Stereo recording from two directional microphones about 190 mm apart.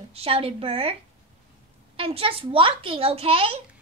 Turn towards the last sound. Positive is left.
turn(degrees=-30)  # may be behind; listen again after turning